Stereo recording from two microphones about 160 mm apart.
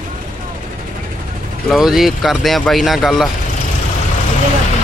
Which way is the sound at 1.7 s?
Centre (ahead or behind).